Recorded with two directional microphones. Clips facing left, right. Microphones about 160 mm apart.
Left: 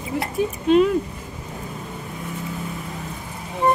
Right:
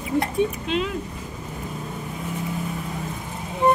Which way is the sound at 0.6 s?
45° left (ahead or behind).